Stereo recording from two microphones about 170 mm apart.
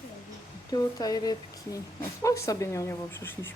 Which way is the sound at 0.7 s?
20° left (ahead or behind).